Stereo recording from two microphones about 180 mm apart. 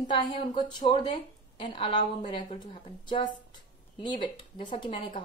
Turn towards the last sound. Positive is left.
turn(degrees=25)  # may be behind; listen again after turning